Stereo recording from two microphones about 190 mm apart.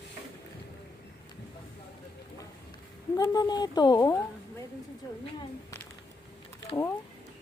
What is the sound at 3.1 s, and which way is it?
Speech, 20° left (ahead or behind).